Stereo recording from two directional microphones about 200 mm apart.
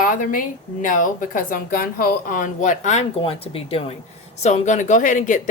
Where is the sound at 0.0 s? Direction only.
45° left (ahead or behind).